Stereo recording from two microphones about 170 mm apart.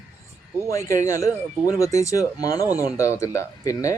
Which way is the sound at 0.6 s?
15° left (ahead or behind).